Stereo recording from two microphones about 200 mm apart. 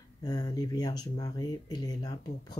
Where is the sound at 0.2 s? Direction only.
20° left (ahead or behind).